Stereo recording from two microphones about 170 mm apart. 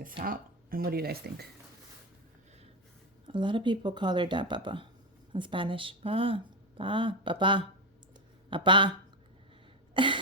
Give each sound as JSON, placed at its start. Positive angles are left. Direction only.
{"t": 0.2, "sound": "speech", "side_deg": -60}
{"t": 3.2, "sound": "speech", "side_deg": -30}
{"t": 9.9, "sound": "a sound", "side_deg": -30}